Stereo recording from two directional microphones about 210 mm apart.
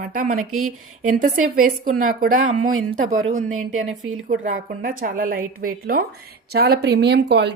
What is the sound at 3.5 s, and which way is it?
Speech, 85° right.